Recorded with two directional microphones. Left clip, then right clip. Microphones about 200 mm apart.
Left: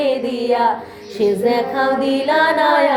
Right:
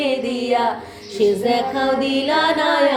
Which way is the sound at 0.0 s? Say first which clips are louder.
Left 3 dB; 20° left (ahead or behind).